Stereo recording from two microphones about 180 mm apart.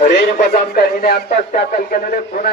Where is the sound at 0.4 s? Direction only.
60° left (ahead or behind).